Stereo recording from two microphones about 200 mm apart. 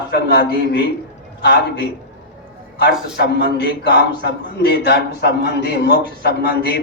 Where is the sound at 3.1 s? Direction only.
55° left (ahead or behind).